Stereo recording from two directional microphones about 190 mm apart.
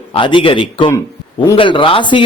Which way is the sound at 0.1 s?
25° left (ahead or behind).